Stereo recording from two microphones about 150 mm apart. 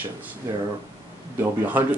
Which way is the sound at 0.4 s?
20° right (ahead or behind).